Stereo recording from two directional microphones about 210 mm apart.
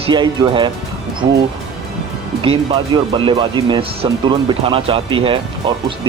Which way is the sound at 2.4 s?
25° right (ahead or behind).